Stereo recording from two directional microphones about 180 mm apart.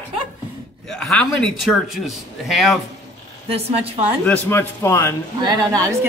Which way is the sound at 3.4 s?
35° right (ahead or behind).